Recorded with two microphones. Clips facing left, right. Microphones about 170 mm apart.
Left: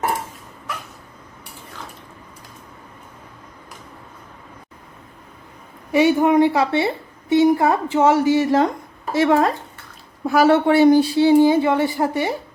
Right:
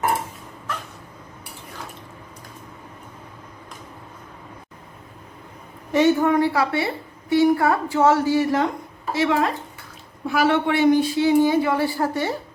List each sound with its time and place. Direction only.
5.9 s a woman's voice: 10° left (ahead or behind)
9.1 s a woman's voice: 45° left (ahead or behind); by 12.4 s 15° left (ahead or behind)